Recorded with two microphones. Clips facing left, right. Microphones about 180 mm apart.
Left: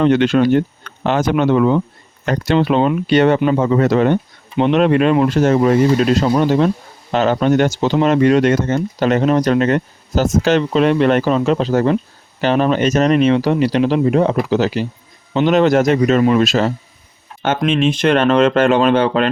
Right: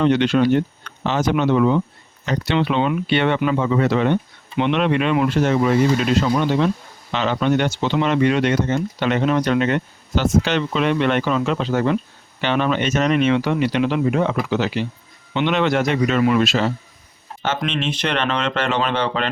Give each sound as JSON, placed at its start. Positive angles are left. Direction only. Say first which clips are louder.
{"t": 0.0, "sound": "speech", "louder": "left 3 dB", "side_deg": 45}
{"t": 17.4, "sound": "speech", "louder": "left 7 dB", "side_deg": 50}